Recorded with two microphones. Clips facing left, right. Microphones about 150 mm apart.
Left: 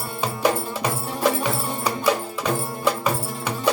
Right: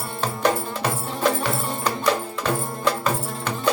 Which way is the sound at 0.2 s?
10° left (ahead or behind).